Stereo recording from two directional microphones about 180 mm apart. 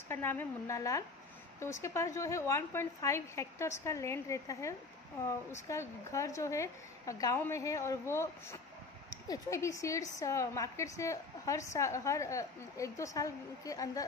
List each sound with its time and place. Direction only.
0.1 s a woman's voice: 10° left (ahead or behind)